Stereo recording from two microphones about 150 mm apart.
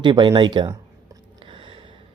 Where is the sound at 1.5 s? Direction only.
35° right (ahead or behind).